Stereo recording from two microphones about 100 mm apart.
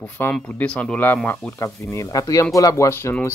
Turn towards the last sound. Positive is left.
turn(degrees=30)  # may be behind; listen again after turning